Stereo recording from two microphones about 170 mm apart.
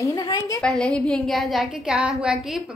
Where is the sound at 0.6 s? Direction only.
5° left (ahead or behind).